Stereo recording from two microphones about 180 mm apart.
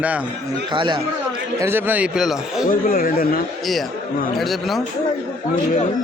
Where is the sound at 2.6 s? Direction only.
50° left (ahead or behind).